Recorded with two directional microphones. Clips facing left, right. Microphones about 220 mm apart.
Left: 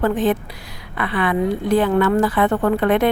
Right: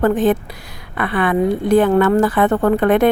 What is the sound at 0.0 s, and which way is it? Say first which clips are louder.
A woman's voice: right 3 dB; 45° right (ahead or behind).